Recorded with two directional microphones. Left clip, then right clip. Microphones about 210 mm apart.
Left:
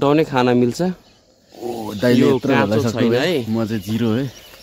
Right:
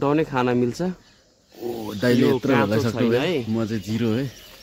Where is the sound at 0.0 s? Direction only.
45° left (ahead or behind).